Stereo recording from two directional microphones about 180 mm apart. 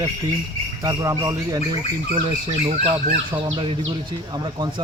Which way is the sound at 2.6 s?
25° right (ahead or behind).